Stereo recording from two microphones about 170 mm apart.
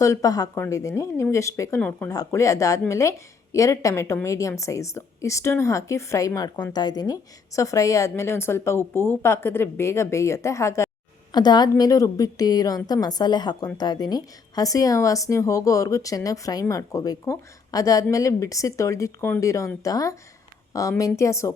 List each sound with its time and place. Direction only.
0.0 s a woman's voice: 20° left (ahead or behind)